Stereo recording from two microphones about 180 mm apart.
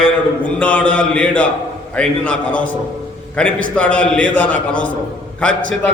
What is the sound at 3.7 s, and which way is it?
Mantra, 5° left (ahead or behind).